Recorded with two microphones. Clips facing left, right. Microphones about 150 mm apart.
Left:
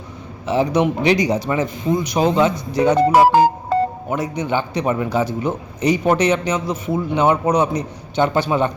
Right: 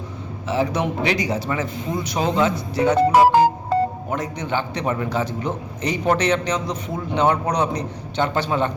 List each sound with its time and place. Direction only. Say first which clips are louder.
0.4 s a man's voice: left 5 dB; 15° left (ahead or behind)
3.1 s music: left 2 dB; 75° left (ahead or behind)
4.1 s a man's voice: left 4 dB; 10° left (ahead or behind)